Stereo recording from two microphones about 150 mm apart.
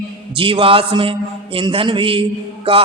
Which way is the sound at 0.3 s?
35° right (ahead or behind).